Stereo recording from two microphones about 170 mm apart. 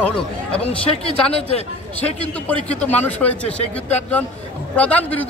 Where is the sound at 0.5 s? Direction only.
35° left (ahead or behind).